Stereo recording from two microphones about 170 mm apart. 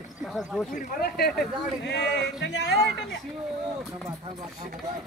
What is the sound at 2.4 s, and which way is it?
Speech, 90° left.